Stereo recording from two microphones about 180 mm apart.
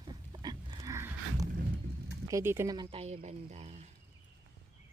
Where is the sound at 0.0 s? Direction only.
20° right (ahead or behind).